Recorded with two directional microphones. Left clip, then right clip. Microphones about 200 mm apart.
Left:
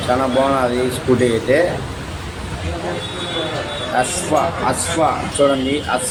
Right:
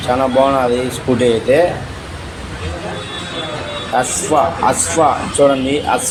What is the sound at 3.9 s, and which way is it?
A man's voice, 5° right (ahead or behind).